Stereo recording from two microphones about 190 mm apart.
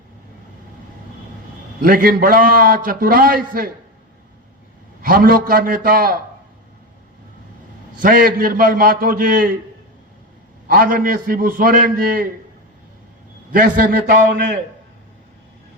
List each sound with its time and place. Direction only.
1.8 s a man's voice: 50° right (ahead or behind)
5.0 s a man's voice: 50° right (ahead or behind)
7.9 s a man's voice: 45° right (ahead or behind)
10.7 s a man's voice: 50° right (ahead or behind)
13.5 s a man's voice: 45° right (ahead or behind)